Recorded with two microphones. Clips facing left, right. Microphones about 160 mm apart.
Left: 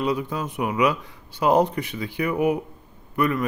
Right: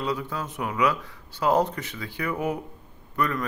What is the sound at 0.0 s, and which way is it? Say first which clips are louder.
Speech: left 4 dB; 15° left (ahead or behind).